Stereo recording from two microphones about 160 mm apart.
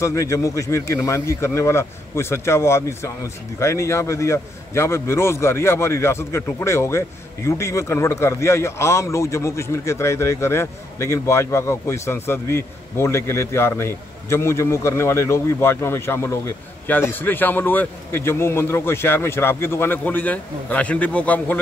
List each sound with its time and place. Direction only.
0.0 s a man's voice: 20° left (ahead or behind)